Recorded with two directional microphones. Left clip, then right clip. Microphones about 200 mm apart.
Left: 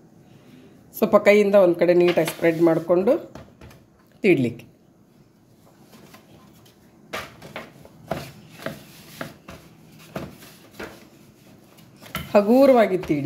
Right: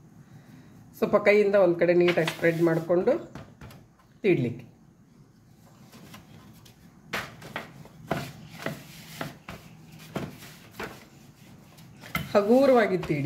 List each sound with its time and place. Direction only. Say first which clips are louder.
0.9 s speech: left 5 dB; 35° left (ahead or behind)
4.2 s speech: left 6 dB; 35° left (ahead or behind)
12.3 s speech: left 5 dB; 35° left (ahead or behind)